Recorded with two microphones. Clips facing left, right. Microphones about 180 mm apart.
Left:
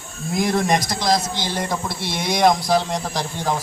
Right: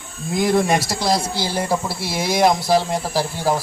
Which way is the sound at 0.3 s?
5° right (ahead or behind).